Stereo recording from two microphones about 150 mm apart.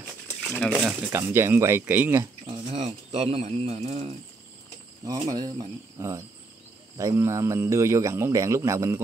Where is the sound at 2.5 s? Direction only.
45° right (ahead or behind).